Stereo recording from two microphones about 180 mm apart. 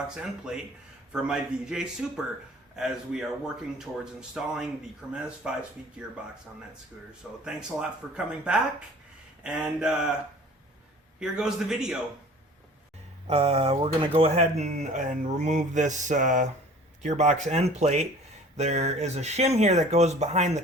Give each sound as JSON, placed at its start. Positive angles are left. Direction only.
{"t": 0.1, "sound": "speech", "side_deg": -5}
{"t": 7.4, "sound": "speech", "side_deg": -5}
{"t": 11.2, "sound": "speech", "side_deg": -5}
{"t": 13.2, "sound": "speech", "side_deg": -35}
{"t": 14.6, "sound": "mantra", "side_deg": -40}
{"t": 17.0, "sound": "speech", "side_deg": -45}